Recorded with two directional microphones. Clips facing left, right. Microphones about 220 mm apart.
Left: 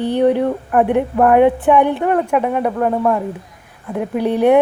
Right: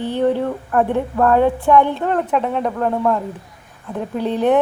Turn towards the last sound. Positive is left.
turn(degrees=15)  # may be behind; listen again after turning